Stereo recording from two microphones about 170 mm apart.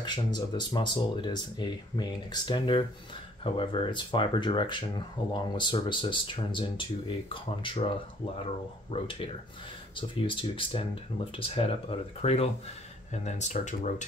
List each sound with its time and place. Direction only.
0.0 s speech: 25° left (ahead or behind)
8.9 s speech: 30° left (ahead or behind)